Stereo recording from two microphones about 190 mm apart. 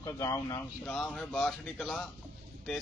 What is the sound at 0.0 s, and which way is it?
Speech, 15° left (ahead or behind).